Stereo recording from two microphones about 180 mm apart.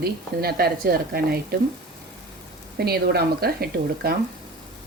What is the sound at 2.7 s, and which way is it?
A woman's voice, 60° right (ahead or behind).